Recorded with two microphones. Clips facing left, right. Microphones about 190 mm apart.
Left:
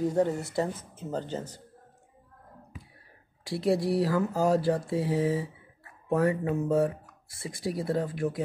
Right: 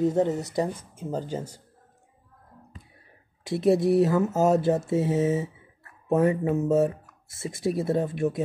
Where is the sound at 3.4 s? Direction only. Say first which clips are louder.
Right 5 dB; 20° right (ahead or behind).